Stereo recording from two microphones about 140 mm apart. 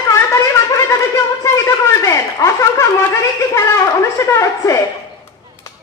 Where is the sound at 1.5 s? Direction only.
20° left (ahead or behind).